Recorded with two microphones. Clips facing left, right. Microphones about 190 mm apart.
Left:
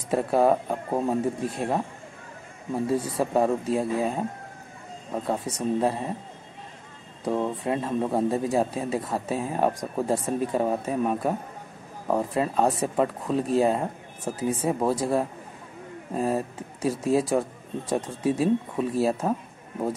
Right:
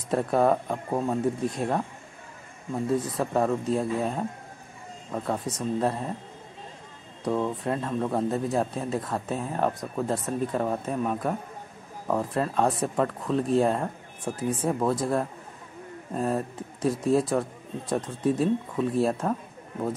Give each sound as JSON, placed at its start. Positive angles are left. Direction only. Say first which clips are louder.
{"t": 0.1, "sound": "speech", "louder": "left 1 dB", "side_deg": 5}
{"t": 0.8, "sound": "speech", "louder": "left 1 dB", "side_deg": 20}
{"t": 1.5, "sound": "speech", "louder": "left 1 dB", "side_deg": 5}
{"t": 7.2, "sound": "speech", "louder": "left 1 dB", "side_deg": 15}